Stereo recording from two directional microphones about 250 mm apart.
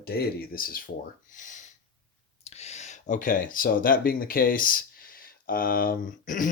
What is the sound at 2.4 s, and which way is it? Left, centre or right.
Speech, left.